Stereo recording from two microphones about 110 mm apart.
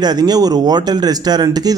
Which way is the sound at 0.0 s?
35° right (ahead or behind).